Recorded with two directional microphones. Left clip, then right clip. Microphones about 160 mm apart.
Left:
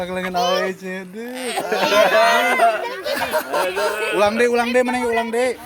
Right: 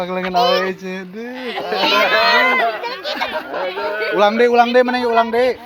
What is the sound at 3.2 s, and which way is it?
Speech, 75° left (ahead or behind).